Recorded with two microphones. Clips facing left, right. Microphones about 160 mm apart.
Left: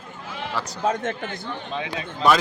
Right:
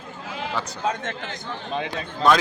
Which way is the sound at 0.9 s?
50° left (ahead or behind).